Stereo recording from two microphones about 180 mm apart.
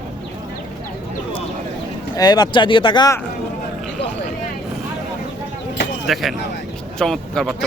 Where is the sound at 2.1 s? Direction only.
20° left (ahead or behind).